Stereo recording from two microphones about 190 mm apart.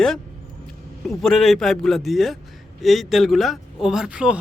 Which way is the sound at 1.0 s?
Centre (ahead or behind).